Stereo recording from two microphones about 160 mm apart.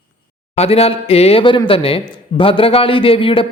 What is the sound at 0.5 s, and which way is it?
Speech, 40° left (ahead or behind).